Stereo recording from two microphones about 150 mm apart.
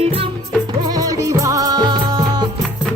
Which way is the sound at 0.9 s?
25° right (ahead or behind).